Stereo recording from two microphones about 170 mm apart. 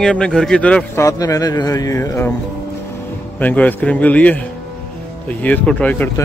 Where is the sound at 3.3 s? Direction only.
10° left (ahead or behind).